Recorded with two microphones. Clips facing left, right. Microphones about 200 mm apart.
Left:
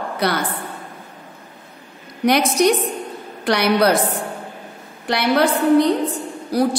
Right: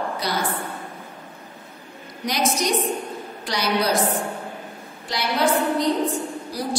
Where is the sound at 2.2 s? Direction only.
60° left (ahead or behind).